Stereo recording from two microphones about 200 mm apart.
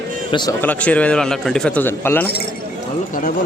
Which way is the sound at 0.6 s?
5° left (ahead or behind).